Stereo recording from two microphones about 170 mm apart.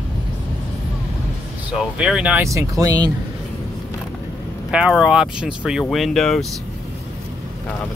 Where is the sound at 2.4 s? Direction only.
20° right (ahead or behind).